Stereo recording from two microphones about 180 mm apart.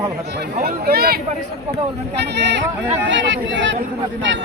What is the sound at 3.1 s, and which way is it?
Speech, 90° right.